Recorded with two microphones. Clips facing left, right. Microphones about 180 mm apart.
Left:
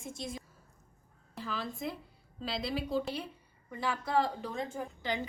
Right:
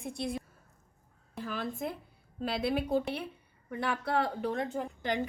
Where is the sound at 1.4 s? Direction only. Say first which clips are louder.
Right 2 dB; 55° right (ahead or behind).